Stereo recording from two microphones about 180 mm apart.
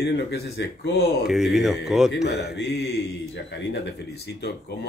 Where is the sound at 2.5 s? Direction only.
65° left (ahead or behind).